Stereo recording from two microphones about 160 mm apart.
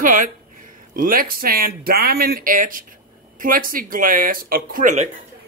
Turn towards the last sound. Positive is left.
turn(degrees=-65)  # may be behind; listen again after turning